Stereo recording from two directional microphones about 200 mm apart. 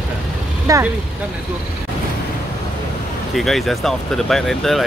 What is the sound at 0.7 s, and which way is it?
Speech, 15° right (ahead or behind).